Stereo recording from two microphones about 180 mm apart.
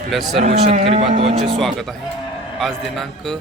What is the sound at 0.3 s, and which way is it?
Speech, 35° right (ahead or behind).